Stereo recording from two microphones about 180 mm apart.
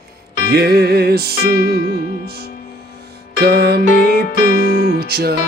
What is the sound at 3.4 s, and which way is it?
Music, 60° right (ahead or behind).